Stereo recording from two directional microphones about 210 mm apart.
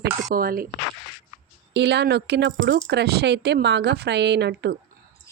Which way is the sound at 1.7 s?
55° right (ahead or behind).